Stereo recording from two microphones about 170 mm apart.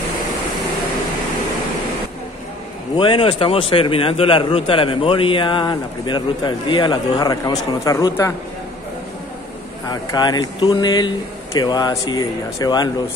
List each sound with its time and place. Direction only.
3.0 s a man's voice: 30° left (ahead or behind)
9.8 s a man's voice: 25° left (ahead or behind)